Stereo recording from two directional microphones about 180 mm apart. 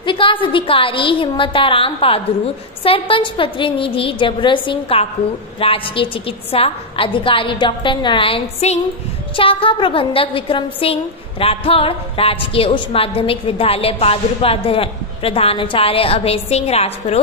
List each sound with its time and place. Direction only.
0.0 s a woman's voice: 25° left (ahead or behind)